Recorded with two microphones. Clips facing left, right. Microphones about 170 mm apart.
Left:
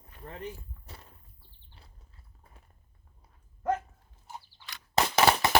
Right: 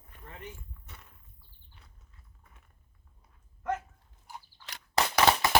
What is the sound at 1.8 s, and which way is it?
Horse, 30° left (ahead or behind).